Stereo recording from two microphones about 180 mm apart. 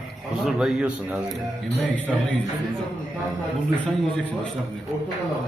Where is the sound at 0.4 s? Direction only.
Centre (ahead or behind).